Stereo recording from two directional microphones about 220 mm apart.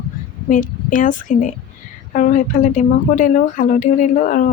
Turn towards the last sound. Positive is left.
turn(degrees=35)  # may be behind; listen again after turning